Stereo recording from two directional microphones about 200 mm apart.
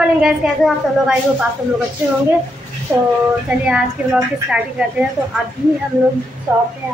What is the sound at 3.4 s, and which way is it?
Speech, 5° right (ahead or behind).